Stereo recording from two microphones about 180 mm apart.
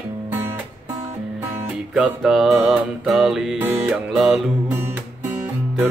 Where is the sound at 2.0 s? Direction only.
5° right (ahead or behind).